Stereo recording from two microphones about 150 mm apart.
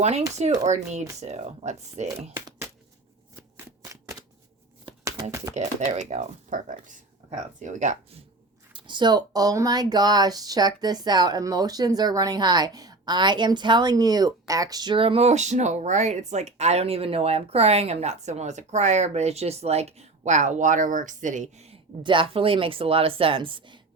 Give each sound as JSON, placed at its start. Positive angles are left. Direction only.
{"t": 0.0, "sound": "speech", "side_deg": -45}
{"t": 5.5, "sound": "speech", "side_deg": -50}
{"t": 8.7, "sound": "speech", "side_deg": -30}
{"t": 22.0, "sound": "speech", "side_deg": -35}